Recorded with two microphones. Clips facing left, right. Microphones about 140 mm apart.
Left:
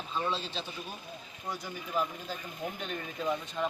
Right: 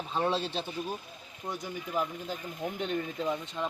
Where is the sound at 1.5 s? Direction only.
20° right (ahead or behind).